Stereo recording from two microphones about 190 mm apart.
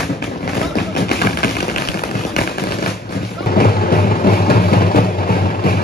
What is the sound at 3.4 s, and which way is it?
Music, 50° left (ahead or behind).